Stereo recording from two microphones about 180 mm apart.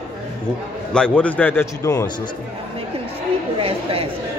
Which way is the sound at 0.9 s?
5° left (ahead or behind).